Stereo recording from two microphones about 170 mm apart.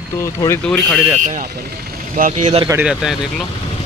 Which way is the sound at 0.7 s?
5° left (ahead or behind).